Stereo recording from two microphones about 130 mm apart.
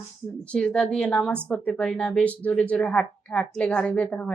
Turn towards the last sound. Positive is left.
turn(degrees=10)  # may be behind; listen again after turning